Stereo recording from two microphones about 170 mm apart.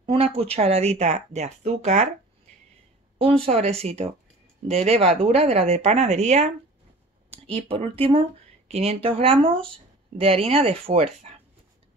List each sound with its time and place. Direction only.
0.0 s speech: 35° right (ahead or behind)
3.4 s speech: 40° right (ahead or behind)